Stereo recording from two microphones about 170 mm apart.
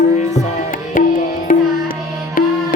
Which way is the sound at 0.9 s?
55° left (ahead or behind).